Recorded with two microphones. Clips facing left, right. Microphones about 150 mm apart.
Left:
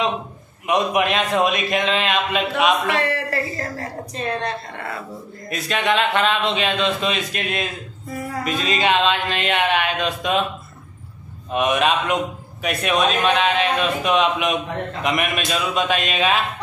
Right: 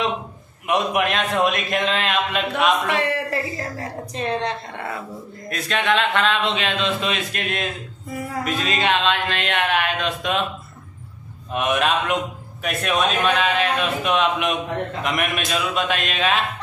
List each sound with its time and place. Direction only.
0.7 s speech: centre (ahead or behind)
2.9 s a woman's voice: 15° right (ahead or behind)
5.5 s speech: 5° left (ahead or behind)
11.5 s speech: centre (ahead or behind)